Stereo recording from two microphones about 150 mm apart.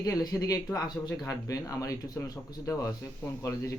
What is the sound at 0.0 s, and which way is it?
Speech, 25° left (ahead or behind).